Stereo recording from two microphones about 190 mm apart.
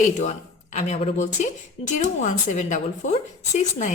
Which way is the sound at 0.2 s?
35° left (ahead or behind).